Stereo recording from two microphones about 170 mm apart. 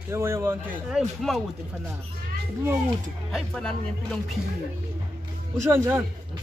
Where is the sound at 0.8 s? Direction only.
Centre (ahead or behind).